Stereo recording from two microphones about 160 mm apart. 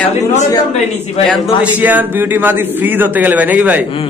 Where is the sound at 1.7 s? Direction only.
10° right (ahead or behind).